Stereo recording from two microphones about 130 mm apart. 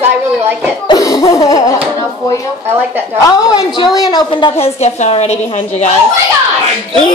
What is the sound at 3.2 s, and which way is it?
A woman's voice, 30° left (ahead or behind).